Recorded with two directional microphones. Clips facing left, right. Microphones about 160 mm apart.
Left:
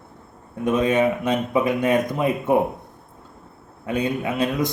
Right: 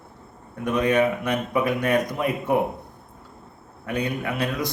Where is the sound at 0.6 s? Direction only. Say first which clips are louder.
Left 2 dB; 25° left (ahead or behind).